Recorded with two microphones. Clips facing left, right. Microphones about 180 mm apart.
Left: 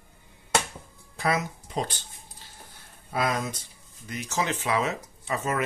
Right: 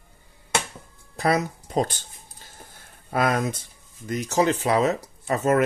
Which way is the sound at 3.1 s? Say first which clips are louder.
Right 5 dB; 55° right (ahead or behind).